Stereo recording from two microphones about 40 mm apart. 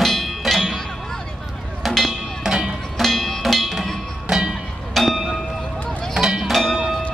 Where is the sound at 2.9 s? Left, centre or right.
Centre.